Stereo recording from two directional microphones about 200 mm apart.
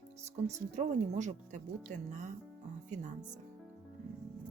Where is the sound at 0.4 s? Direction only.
35° right (ahead or behind).